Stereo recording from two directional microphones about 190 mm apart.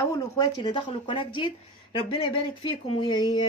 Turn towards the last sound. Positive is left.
turn(degrees=25)  # may be behind; listen again after turning